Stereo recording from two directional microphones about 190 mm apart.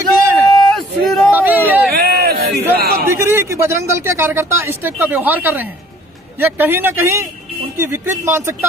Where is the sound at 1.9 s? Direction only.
55° right (ahead or behind).